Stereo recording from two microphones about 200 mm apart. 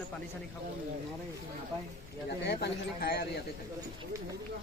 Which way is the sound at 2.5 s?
50° left (ahead or behind).